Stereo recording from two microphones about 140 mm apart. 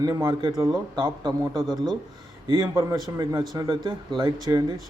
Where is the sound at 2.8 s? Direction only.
25° right (ahead or behind).